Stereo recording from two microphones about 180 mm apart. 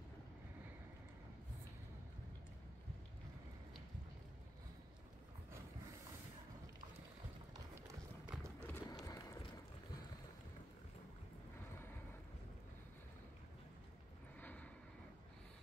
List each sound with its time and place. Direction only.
8.3 s horse: 5° right (ahead or behind)
8.6 s run: 15° left (ahead or behind)
14.4 s vehicle: 10° left (ahead or behind)